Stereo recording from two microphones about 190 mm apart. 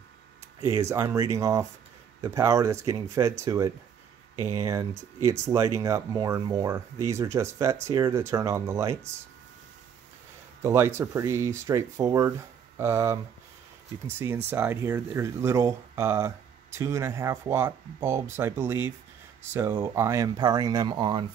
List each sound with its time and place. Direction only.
0.7 s speech: 15° right (ahead or behind)
10.6 s speech: 15° right (ahead or behind)